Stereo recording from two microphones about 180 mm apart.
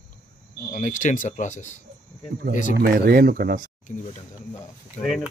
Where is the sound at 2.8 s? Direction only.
55° right (ahead or behind).